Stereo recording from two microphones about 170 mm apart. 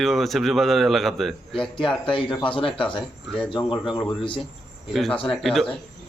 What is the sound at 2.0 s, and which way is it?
Speech, 30° left (ahead or behind).